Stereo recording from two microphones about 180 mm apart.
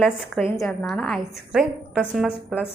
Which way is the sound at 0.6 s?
5° left (ahead or behind).